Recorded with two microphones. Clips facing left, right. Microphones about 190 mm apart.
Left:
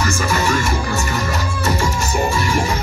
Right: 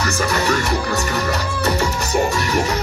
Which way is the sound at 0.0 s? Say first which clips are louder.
Even; 40° right (ahead or behind).